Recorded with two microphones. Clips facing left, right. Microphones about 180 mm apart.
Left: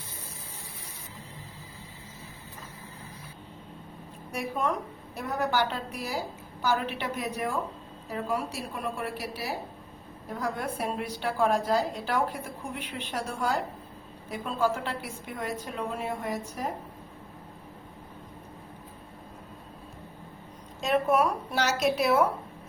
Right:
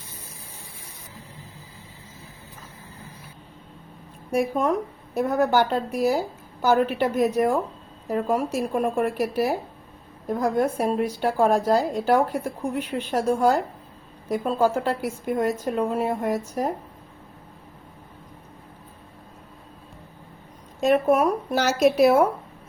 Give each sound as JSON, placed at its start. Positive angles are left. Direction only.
{"t": 4.3, "sound": "a woman's voice", "side_deg": -45}
{"t": 20.8, "sound": "a woman's voice", "side_deg": -50}